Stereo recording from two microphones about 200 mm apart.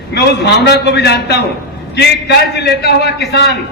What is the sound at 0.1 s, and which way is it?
A man's voice, 55° left (ahead or behind).